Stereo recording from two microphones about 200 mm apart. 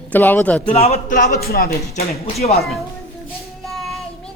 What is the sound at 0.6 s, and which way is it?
Speech, 30° left (ahead or behind).